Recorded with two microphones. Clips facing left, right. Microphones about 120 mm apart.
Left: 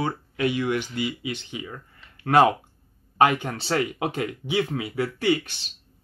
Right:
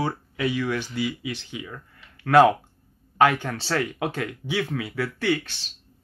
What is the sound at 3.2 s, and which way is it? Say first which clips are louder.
Speech: even; 15° left (ahead or behind).